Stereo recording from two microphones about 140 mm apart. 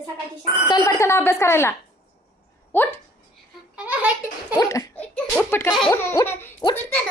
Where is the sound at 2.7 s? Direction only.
15° left (ahead or behind).